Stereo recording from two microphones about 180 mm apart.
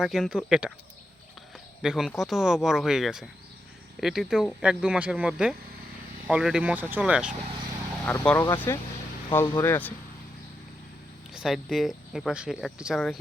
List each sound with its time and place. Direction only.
0.0 s speech: 5° right (ahead or behind)
1.8 s speech: centre (ahead or behind)
8.0 s speech: 10° left (ahead or behind)
11.3 s speech: centre (ahead or behind)